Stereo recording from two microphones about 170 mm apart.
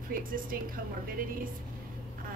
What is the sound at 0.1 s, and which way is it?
Speech, 55° right (ahead or behind).